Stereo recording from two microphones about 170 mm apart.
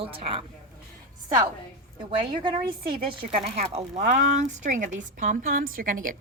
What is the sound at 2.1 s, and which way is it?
Speech, 30° right (ahead or behind).